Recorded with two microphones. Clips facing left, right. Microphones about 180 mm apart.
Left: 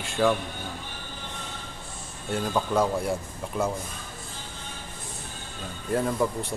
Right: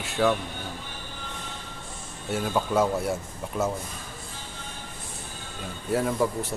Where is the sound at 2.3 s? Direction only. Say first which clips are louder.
Even; 5° right (ahead or behind).